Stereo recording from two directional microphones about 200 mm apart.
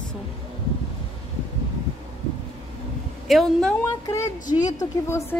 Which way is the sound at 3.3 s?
Centre (ahead or behind).